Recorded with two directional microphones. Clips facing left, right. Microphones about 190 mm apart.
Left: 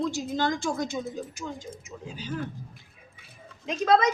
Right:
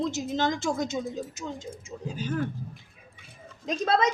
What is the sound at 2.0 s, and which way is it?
Speech, 50° right (ahead or behind).